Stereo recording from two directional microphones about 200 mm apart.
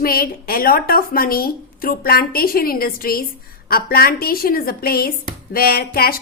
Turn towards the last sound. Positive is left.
turn(degrees=50)  # may be behind; listen again after turning